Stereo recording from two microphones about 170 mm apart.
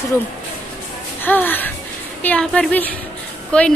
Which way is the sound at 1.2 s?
10° left (ahead or behind).